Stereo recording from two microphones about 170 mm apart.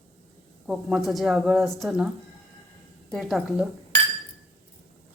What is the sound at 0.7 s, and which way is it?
Speech, 5° right (ahead or behind).